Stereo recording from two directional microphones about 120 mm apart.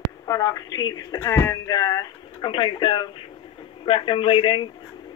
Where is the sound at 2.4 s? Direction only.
45° left (ahead or behind).